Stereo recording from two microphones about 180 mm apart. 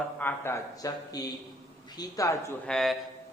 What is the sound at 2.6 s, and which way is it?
Speech, 5° left (ahead or behind).